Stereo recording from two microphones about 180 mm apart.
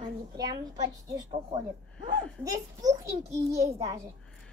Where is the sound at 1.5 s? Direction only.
30° right (ahead or behind).